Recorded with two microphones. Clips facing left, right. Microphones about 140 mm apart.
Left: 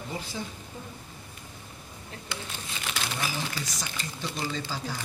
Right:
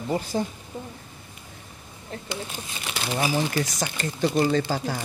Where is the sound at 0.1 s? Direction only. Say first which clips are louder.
Right 11 dB; 50° right (ahead or behind).